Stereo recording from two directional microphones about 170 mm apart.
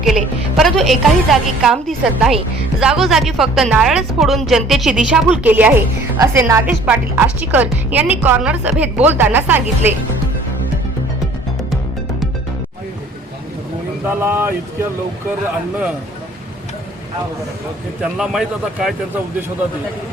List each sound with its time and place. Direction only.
0.0 s a woman's voice: centre (ahead or behind)
14.2 s a woman's voice: 15° right (ahead or behind)
18.0 s speech: 5° right (ahead or behind)